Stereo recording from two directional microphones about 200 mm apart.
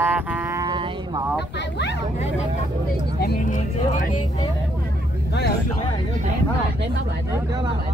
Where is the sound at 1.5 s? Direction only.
60° left (ahead or behind).